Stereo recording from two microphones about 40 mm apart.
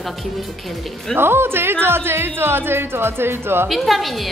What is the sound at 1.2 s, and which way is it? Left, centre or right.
Speech, right.